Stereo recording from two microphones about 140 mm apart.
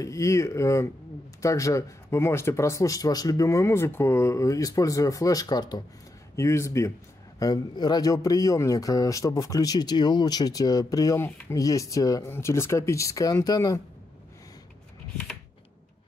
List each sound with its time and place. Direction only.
0.0 s speech: 20° left (ahead or behind)